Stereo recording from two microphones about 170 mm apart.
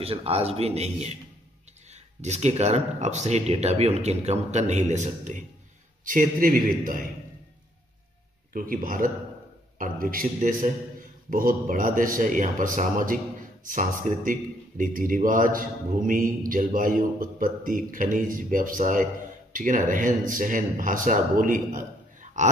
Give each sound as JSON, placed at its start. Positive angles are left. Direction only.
{"t": 0.0, "sound": "speech", "side_deg": -35}
{"t": 2.2, "sound": "a man's voice", "side_deg": -40}
{"t": 8.5, "sound": "a man's voice", "side_deg": -55}